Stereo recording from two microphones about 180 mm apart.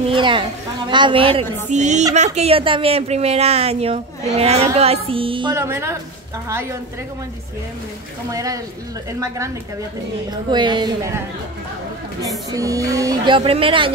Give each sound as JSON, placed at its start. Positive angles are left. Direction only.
{"t": 0.1, "sound": "speech", "side_deg": -25}
{"t": 1.7, "sound": "speech", "side_deg": -40}
{"t": 5.5, "sound": "speech", "side_deg": -15}
{"t": 8.3, "sound": "speech", "side_deg": -20}
{"t": 10.3, "sound": "speech", "side_deg": -25}
{"t": 12.4, "sound": "speech", "side_deg": -20}